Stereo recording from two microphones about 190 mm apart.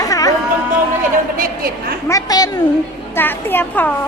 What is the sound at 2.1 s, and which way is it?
A woman's voice, 20° left (ahead or behind).